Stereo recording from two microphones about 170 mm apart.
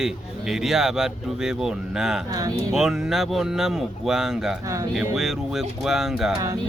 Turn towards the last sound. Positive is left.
turn(degrees=0)  # may be behind; listen again after turning